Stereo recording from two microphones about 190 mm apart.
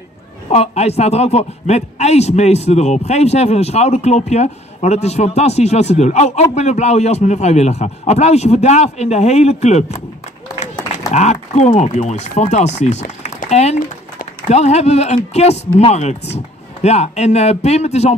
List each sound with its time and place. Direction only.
0.5 s a man's voice: 35° left (ahead or behind)